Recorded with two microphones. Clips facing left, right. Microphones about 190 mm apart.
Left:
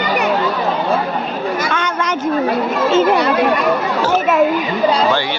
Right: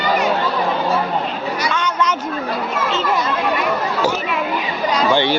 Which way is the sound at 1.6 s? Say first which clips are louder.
Even; 55° left (ahead or behind).